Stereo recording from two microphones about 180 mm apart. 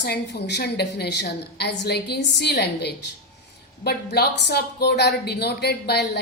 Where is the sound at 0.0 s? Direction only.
70° left (ahead or behind).